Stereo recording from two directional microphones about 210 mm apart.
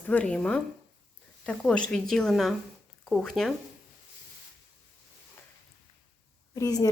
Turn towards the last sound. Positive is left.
turn(degrees=15)  # may be behind; listen again after turning